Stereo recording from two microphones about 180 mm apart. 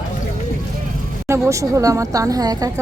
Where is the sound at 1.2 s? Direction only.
15° right (ahead or behind).